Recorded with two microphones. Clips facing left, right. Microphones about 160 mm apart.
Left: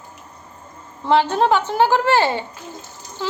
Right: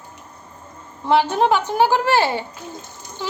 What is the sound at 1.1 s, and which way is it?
Speech, 15° right (ahead or behind).